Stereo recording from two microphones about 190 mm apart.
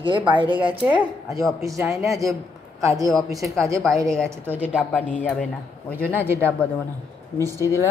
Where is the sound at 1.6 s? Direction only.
15° right (ahead or behind).